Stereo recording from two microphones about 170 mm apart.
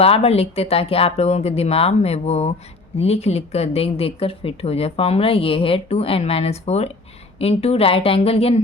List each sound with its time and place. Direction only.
0.0 s speech: 35° left (ahead or behind)